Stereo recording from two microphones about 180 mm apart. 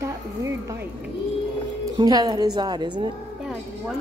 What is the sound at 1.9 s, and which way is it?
A woman's voice, 20° right (ahead or behind).